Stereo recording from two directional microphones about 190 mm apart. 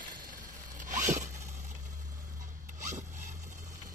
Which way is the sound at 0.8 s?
40° right (ahead or behind).